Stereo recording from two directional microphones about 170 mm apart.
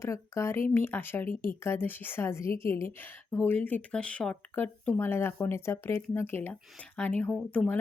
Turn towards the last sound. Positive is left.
turn(degrees=5)  # may be behind; listen again after turning